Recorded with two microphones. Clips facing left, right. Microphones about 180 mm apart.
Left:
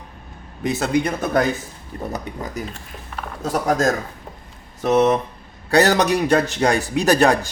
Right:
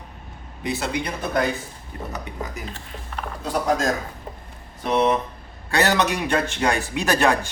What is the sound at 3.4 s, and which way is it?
A man's voice, 45° left (ahead or behind).